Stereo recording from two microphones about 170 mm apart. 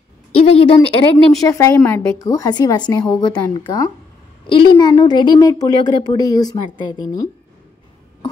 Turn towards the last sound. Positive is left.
turn(degrees=20)  # may be behind; listen again after turning